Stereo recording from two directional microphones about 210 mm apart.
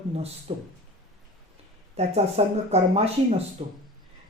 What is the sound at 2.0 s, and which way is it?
A woman's voice, 30° right (ahead or behind).